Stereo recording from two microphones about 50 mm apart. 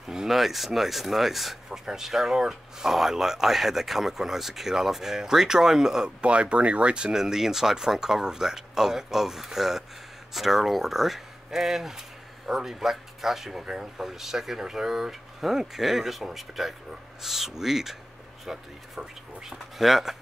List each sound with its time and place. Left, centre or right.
0.1 s speech: centre
6.2 s speech: right
19.8 s speech: centre